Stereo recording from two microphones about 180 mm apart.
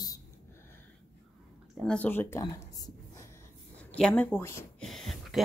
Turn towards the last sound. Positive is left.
turn(degrees=0)  # may be behind; listen again after turning